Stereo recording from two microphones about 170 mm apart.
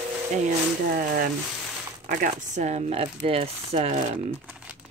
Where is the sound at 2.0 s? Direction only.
50° right (ahead or behind).